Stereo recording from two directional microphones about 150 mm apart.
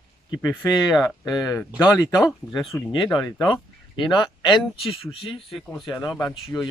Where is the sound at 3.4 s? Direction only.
30° left (ahead or behind).